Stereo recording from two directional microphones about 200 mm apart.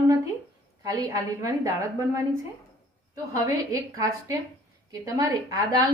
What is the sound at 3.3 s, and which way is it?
A woman's voice, 15° right (ahead or behind).